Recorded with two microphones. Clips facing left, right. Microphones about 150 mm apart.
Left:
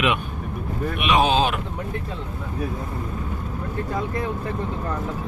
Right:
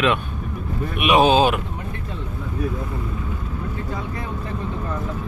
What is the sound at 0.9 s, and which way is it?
Speech, 10° right (ahead or behind).